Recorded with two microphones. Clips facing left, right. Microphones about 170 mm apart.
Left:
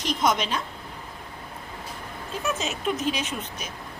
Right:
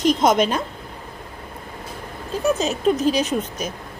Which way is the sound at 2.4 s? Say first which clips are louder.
Right 9 dB; 35° right (ahead or behind).